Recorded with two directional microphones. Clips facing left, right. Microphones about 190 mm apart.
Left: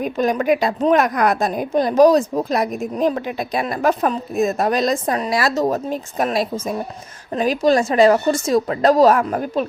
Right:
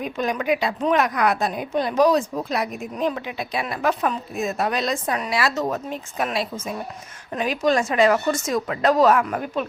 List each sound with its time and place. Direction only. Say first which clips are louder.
0.0 s a woman's voice: left 6 dB; 45° left (ahead or behind)